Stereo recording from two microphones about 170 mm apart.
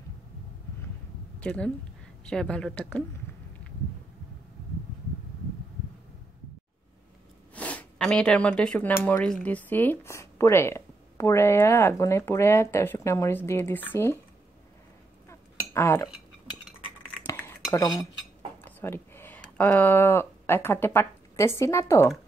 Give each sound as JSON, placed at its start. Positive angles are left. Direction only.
{"t": 1.4, "sound": "a woman's voice", "side_deg": 5}
{"t": 7.5, "sound": "speech", "side_deg": 10}
{"t": 15.2, "sound": "dishes", "side_deg": 15}
{"t": 17.7, "sound": "cutlery", "side_deg": 20}
{"t": 18.6, "sound": "speech", "side_deg": 10}